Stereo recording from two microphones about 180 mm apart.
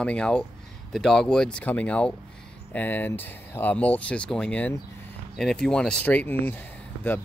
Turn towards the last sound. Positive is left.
turn(degrees=10)  # may be behind; listen again after turning